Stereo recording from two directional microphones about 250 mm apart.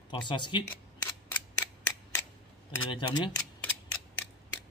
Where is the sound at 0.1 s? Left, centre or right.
Centre.